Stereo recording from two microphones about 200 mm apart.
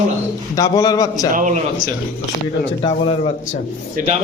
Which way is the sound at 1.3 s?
35° right (ahead or behind).